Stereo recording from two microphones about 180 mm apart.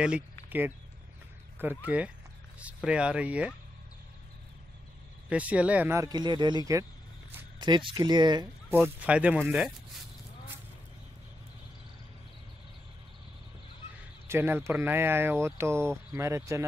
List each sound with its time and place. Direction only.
0.0 s speech: 10° right (ahead or behind)
5.3 s speech: 5° right (ahead or behind); by 8.5 s 25° right (ahead or behind)
8.6 s speech: 10° right (ahead or behind)
14.2 s speech: 15° right (ahead or behind)